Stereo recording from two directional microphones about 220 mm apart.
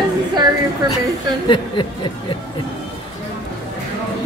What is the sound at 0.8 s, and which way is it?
Speech, 20° right (ahead or behind).